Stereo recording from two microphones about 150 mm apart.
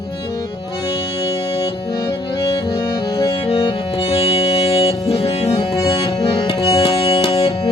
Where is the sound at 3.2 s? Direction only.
30° left (ahead or behind).